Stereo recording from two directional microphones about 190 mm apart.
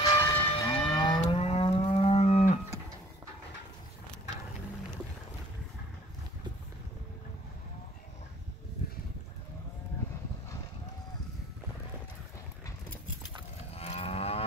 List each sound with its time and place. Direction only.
0.0 s moo: 20° left (ahead or behind)
0.8 s livestock: 25° left (ahead or behind)
13.7 s moo: 30° left (ahead or behind)